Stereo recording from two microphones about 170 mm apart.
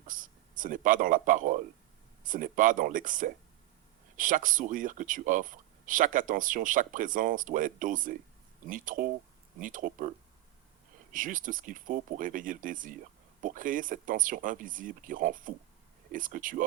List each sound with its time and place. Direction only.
0.1 s speech: 50° right (ahead or behind)
11.1 s speech: 50° right (ahead or behind)